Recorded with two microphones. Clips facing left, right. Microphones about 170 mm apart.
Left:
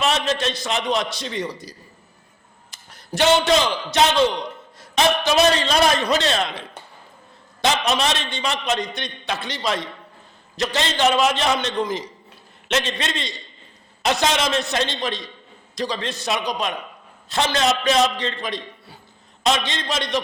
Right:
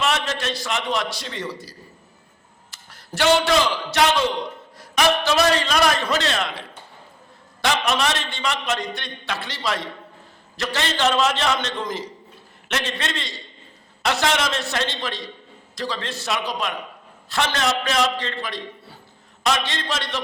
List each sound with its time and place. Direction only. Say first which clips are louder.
0.0 s a man's voice: left 3 dB; 20° left (ahead or behind)